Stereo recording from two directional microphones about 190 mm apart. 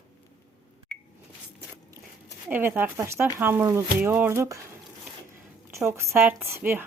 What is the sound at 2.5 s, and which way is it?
A woman's voice, 10° right (ahead or behind).